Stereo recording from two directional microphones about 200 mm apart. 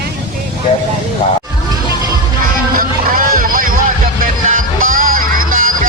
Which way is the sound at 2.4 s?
45° right (ahead or behind).